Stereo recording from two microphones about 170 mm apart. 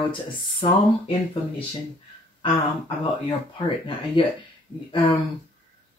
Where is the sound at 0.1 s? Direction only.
30° left (ahead or behind).